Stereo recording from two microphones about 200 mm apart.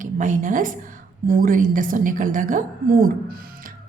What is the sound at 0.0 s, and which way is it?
A woman's voice, 40° right (ahead or behind).